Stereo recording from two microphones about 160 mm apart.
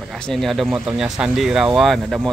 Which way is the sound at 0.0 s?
Centre (ahead or behind).